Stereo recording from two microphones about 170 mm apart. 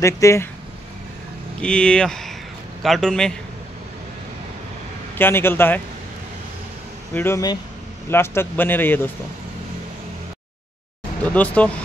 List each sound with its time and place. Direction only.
0.0 s a man's voice: 15° left (ahead or behind)
1.6 s a man's voice: 5° left (ahead or behind)
5.1 s a man's voice: 15° left (ahead or behind)
7.2 s a man's voice: 15° left (ahead or behind)
11.2 s a man's voice: 10° left (ahead or behind)